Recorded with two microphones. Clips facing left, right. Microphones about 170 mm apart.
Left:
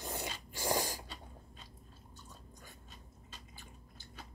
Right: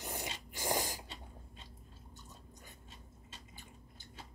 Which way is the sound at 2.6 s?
25° right (ahead or behind).